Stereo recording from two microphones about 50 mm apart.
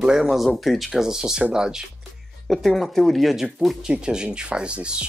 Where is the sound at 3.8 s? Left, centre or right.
Centre.